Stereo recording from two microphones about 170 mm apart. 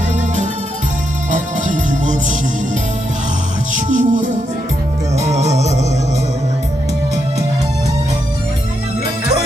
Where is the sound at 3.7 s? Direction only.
45° right (ahead or behind).